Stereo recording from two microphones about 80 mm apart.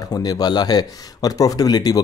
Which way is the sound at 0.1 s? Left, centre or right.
Left.